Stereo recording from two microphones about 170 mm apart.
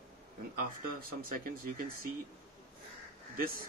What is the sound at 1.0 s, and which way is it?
Speech, 60° right (ahead or behind).